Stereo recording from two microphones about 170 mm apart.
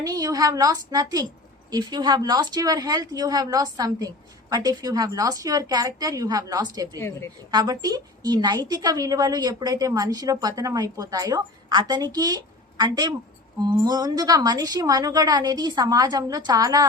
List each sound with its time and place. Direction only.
0.0 s a woman's voice: 20° right (ahead or behind)